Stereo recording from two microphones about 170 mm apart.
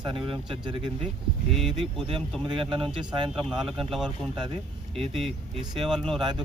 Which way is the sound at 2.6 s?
30° right (ahead or behind).